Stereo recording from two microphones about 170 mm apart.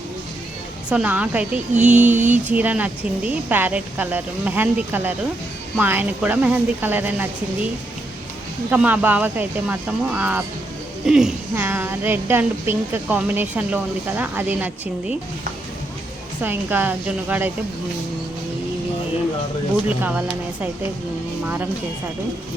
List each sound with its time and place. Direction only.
0.9 s a woman's voice: 5° right (ahead or behind)
1.7 s mantra: 45° right (ahead or behind)
2.5 s a woman's voice: 10° right (ahead or behind)
8.7 s a woman's voice: 10° right (ahead or behind)
16.4 s a woman's voice: 10° right (ahead or behind)
20.0 s a woman's voice: 10° right (ahead or behind)